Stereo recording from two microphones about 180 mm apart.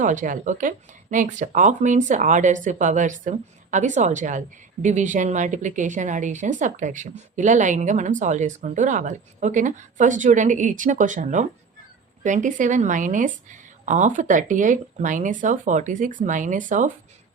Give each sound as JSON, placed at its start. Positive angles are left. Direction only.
{"t": 0.0, "sound": "speech", "side_deg": -45}